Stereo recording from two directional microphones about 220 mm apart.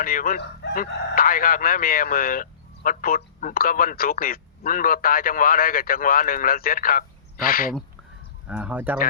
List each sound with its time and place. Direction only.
0.0 s speech: 40° left (ahead or behind)
8.4 s speech: 5° right (ahead or behind)